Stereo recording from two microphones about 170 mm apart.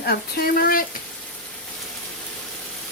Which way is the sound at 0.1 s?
65° left (ahead or behind).